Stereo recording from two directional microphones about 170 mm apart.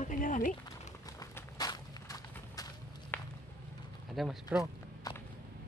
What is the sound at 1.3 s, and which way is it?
Walk, 20° left (ahead or behind).